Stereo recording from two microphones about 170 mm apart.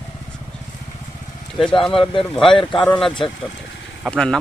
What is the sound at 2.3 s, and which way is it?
A man's voice, centre (ahead or behind).